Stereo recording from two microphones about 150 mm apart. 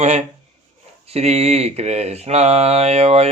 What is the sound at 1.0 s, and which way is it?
Mantra, 45° right (ahead or behind).